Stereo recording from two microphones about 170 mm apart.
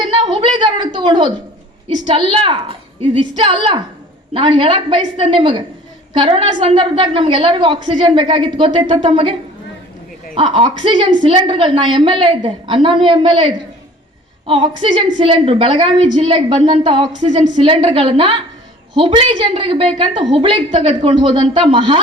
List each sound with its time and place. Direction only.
0.2 s a sound: 30° right (ahead or behind)
0.9 s a woman's voice: 30° right (ahead or behind)
10.3 s a woman's voice: 30° right (ahead or behind)
17.2 s a woman's voice: 45° right (ahead or behind)
17.6 s a woman's voice: 30° right (ahead or behind)